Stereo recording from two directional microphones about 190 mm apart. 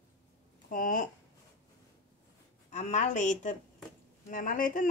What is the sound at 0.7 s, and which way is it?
Speech, 45° left (ahead or behind).